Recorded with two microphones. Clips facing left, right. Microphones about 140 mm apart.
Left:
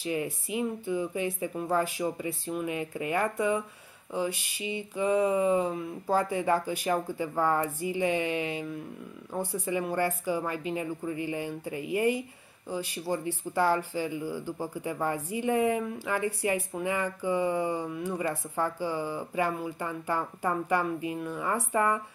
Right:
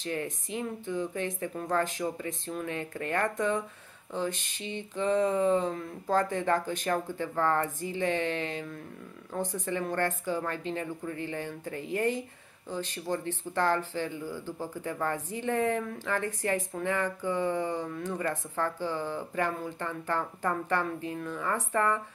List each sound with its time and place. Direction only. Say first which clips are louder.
0.0 s speech: left 3 dB; 10° left (ahead or behind)